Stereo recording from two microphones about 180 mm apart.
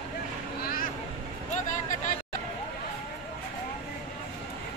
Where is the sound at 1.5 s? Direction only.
45° left (ahead or behind).